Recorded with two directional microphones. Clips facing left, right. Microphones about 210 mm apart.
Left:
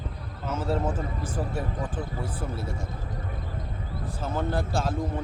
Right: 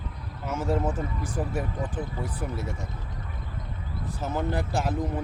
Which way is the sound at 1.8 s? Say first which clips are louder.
Even; 20° right (ahead or behind).